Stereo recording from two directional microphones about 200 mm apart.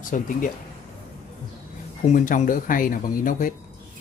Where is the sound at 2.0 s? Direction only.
35° left (ahead or behind).